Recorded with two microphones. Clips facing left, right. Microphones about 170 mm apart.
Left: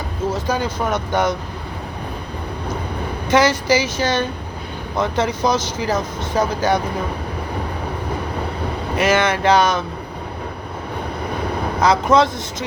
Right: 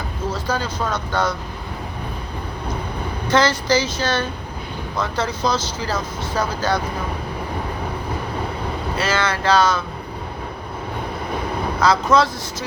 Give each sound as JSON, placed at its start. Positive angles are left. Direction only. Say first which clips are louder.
{"t": 0.4, "sound": "speech", "louder": "left 3 dB", "side_deg": 15}
{"t": 3.3, "sound": "speech", "louder": "left 2 dB", "side_deg": 10}
{"t": 9.0, "sound": "speech", "louder": "left 6 dB", "side_deg": 20}
{"t": 11.8, "sound": "speech", "louder": "left 2 dB", "side_deg": 20}